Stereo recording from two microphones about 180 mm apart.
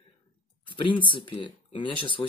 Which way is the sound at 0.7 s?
25° left (ahead or behind).